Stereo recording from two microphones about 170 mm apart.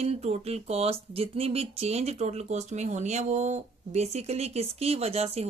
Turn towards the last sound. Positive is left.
turn(degrees=-35)  # may be behind; listen again after turning